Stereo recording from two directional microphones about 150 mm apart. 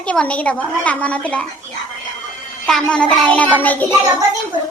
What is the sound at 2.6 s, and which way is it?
A woman's voice, 5° left (ahead or behind).